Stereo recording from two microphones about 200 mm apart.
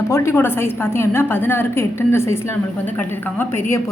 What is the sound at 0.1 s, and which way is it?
A woman's voice, 15° left (ahead or behind).